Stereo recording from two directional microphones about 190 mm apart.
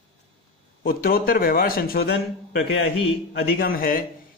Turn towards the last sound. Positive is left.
turn(degrees=50)  # may be behind; listen again after turning